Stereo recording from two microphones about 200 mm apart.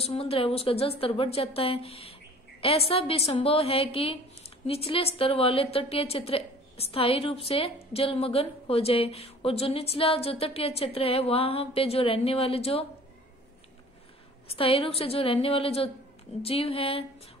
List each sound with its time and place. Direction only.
0.0 s a woman's voice: 30° left (ahead or behind)
14.5 s a woman's voice: 30° left (ahead or behind)